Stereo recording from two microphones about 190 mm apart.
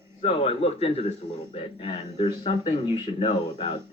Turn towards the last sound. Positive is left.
turn(degrees=30)  # may be behind; listen again after turning